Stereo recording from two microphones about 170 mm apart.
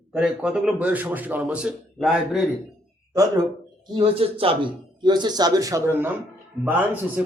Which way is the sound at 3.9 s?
30° right (ahead or behind).